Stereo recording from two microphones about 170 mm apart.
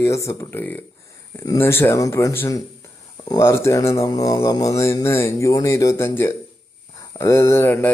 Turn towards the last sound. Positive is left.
turn(degrees=15)  # may be behind; listen again after turning